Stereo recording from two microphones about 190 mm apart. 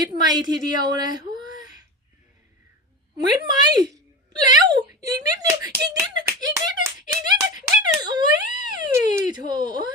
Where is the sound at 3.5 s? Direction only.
20° right (ahead or behind).